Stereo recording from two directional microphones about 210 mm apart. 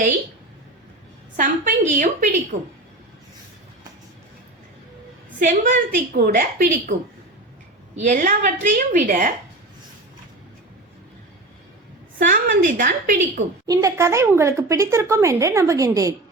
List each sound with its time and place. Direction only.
1.4 s a woman's voice: 35° right (ahead or behind)
5.4 s a woman's voice: 40° right (ahead or behind)
7.9 s a woman's voice: 35° right (ahead or behind)
12.3 s a woman's voice: 40° right (ahead or behind)
13.7 s speech: 15° right (ahead or behind)